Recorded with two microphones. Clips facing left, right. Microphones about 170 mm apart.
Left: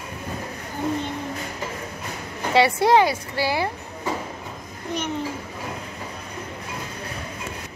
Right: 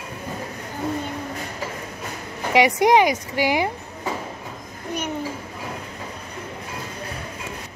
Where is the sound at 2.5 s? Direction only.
15° right (ahead or behind).